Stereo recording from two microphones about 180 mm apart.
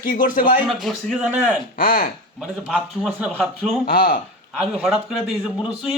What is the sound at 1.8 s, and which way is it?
Speech, 55° left (ahead or behind).